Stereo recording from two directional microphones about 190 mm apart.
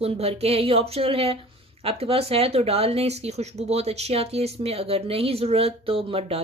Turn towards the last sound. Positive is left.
turn(degrees=-30)  # may be behind; listen again after turning